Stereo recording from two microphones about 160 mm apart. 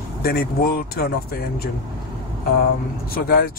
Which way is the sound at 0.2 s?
75° left (ahead or behind).